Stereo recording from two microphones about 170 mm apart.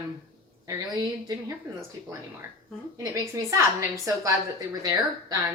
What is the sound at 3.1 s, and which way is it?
A woman's voice, 15° right (ahead or behind).